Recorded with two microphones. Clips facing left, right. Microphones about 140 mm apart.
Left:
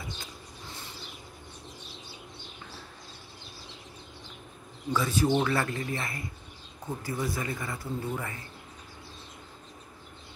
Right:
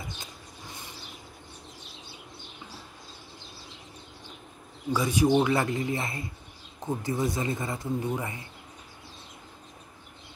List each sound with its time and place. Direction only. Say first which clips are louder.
4.9 s speech: right 3 dB; 15° right (ahead or behind)